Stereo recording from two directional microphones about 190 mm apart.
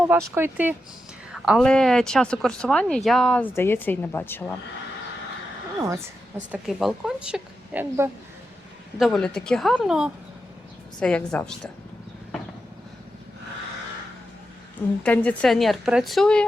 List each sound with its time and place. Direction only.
0.1 s a woman's voice: 15° right (ahead or behind); by 4.5 s 10° left (ahead or behind)
6.5 s a woman's voice: centre (ahead or behind)
9.0 s a woman's voice: centre (ahead or behind)
15.0 s a woman's voice: 5° left (ahead or behind)